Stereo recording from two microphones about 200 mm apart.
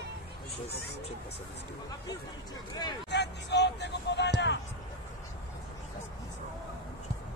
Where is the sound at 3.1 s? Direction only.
60° left (ahead or behind).